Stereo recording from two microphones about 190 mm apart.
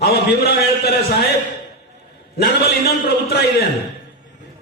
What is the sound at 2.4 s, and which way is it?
A man's voice, 55° left (ahead or behind).